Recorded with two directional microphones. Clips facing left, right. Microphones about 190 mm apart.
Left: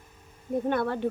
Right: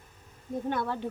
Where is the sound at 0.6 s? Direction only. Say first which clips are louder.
Left 4 dB; 60° left (ahead or behind).